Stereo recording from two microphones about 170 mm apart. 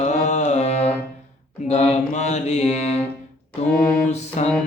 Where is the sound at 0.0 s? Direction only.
45° left (ahead or behind).